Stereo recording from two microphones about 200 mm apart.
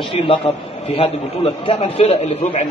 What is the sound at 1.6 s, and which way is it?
A man's voice, 30° left (ahead or behind).